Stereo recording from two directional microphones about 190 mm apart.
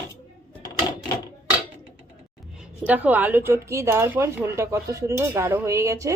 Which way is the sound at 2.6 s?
5° right (ahead or behind).